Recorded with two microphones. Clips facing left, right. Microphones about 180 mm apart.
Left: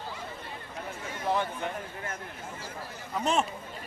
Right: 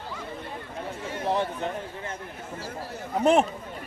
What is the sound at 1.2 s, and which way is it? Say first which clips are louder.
Speech: right 3 dB; 30° right (ahead or behind).